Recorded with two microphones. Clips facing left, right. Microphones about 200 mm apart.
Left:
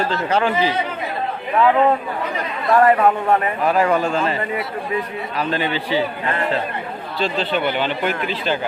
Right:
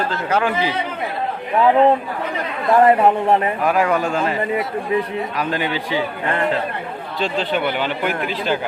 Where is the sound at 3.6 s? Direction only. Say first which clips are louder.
Left 1 dB; 10° right (ahead or behind).